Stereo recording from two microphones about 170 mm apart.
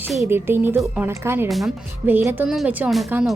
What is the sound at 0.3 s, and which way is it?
A woman's voice, 15° right (ahead or behind).